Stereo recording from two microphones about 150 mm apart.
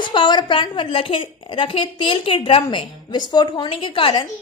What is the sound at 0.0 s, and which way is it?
A woman's voice, 30° left (ahead or behind).